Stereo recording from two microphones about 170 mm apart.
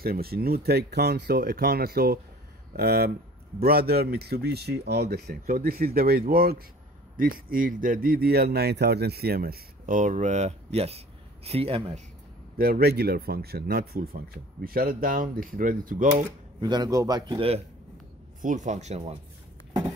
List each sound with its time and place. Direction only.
0.0 s speech: 65° right (ahead or behind); by 12.0 s 35° right (ahead or behind)
12.5 s speech: 60° right (ahead or behind)
16.6 s a man's voice: 25° right (ahead or behind)
18.4 s speech: 50° right (ahead or behind)